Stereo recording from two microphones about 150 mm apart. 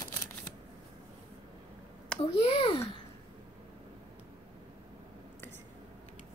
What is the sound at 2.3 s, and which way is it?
Speech, 40° left (ahead or behind).